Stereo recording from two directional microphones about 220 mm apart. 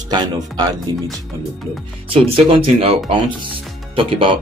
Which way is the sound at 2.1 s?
25° right (ahead or behind).